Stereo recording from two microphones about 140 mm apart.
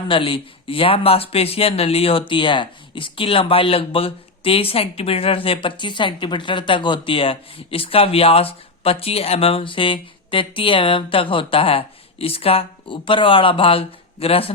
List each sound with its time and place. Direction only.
0.1 s speech: 40° left (ahead or behind)